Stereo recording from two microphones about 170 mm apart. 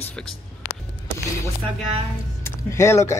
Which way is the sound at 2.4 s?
15° left (ahead or behind).